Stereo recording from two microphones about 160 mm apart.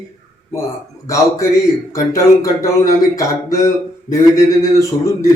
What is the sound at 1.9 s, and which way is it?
A man's voice, 20° left (ahead or behind).